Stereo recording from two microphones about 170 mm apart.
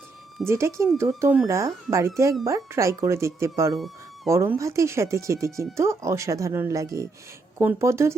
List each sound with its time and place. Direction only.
0.4 s speech: 15° right (ahead or behind)
3.8 s a sound: centre (ahead or behind)
4.3 s speech: 15° right (ahead or behind)